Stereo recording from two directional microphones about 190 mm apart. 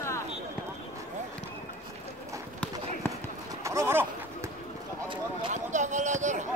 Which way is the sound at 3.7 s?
15° right (ahead or behind).